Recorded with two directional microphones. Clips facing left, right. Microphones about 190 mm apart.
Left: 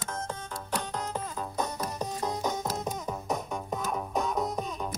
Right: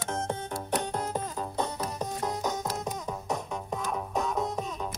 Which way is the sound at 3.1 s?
Centre (ahead or behind).